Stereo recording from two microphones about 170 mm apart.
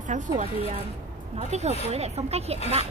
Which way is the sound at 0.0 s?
50° right (ahead or behind).